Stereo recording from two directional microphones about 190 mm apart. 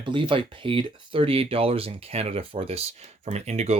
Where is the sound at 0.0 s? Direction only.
25° right (ahead or behind).